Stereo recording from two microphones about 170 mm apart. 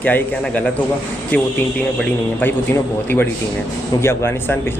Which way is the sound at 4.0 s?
15° left (ahead or behind).